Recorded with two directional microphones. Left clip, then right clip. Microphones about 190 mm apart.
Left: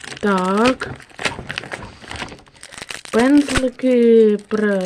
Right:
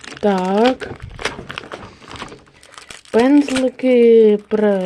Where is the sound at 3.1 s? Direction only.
5° left (ahead or behind).